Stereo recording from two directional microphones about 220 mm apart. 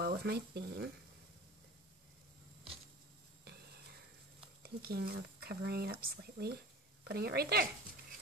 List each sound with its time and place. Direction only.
0.0 s speech: 45° right (ahead or behind)
4.6 s speech: 45° right (ahead or behind)